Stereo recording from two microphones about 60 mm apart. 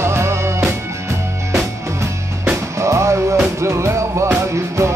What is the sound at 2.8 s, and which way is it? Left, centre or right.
Music, right.